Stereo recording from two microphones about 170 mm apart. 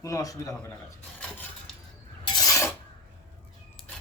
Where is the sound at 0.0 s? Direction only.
20° left (ahead or behind).